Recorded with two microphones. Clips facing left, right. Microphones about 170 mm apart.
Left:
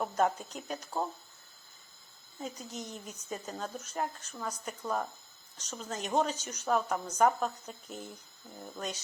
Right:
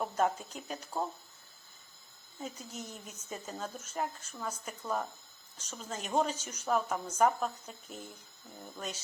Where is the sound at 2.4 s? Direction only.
5° right (ahead or behind).